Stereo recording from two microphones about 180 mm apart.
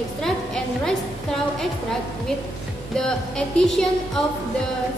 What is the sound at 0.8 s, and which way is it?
A woman's voice, centre (ahead or behind).